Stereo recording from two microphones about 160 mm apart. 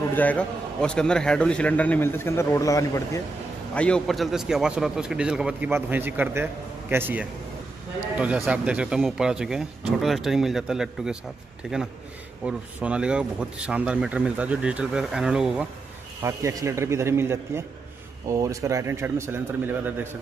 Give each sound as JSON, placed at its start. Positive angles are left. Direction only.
{"t": 0.1, "sound": "a man's voice", "side_deg": 10}
{"t": 3.7, "sound": "a man's voice", "side_deg": 5}
{"t": 16.2, "sound": "speech", "side_deg": -20}